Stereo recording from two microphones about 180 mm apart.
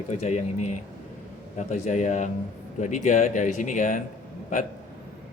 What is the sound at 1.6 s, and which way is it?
A man's voice, 40° left (ahead or behind).